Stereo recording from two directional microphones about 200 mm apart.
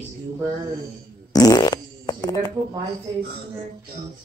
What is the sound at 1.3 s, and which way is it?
Fart, 20° left (ahead or behind).